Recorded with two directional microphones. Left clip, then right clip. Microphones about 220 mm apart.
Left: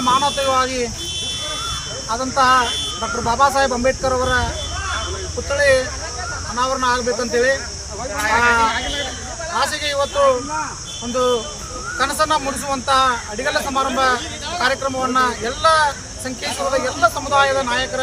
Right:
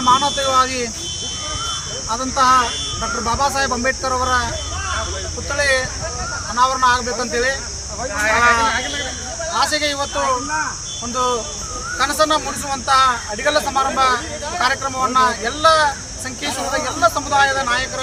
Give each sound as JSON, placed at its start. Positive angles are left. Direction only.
{"t": 0.0, "sound": "speech", "side_deg": -10}
{"t": 2.0, "sound": "speech", "side_deg": -5}
{"t": 5.5, "sound": "speech", "side_deg": -10}
{"t": 11.9, "sound": "speech", "side_deg": -10}